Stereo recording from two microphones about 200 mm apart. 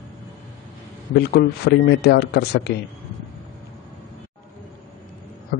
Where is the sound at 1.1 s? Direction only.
55° left (ahead or behind).